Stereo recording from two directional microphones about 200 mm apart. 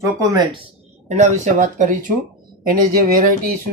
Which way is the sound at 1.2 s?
40° right (ahead or behind).